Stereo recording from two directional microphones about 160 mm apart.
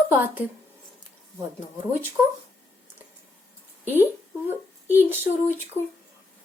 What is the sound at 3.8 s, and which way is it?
A woman's voice, 10° right (ahead or behind).